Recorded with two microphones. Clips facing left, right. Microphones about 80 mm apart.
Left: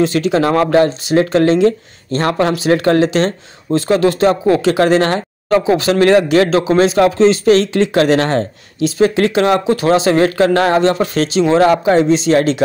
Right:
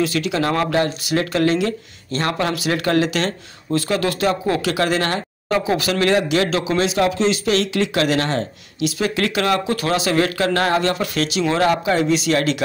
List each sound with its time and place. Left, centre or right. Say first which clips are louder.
0.0 s speech: left 6 dB; left